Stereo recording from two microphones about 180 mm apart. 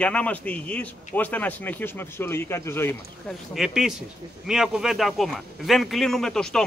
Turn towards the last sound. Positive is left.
turn(degrees=5)  # may be behind; listen again after turning